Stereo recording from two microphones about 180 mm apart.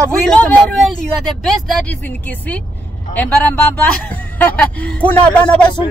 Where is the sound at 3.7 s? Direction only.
10° left (ahead or behind).